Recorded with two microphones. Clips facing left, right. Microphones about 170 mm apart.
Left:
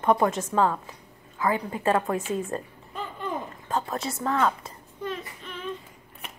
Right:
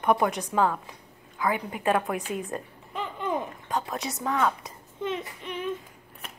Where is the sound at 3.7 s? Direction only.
Centre (ahead or behind).